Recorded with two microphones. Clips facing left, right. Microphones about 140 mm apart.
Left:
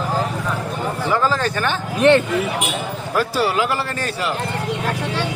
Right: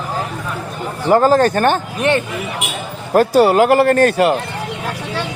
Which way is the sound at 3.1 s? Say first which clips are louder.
Right 9 dB; 50° right (ahead or behind).